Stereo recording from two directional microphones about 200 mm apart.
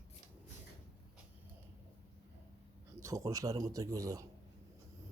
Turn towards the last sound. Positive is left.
turn(degrees=-15)  # may be behind; listen again after turning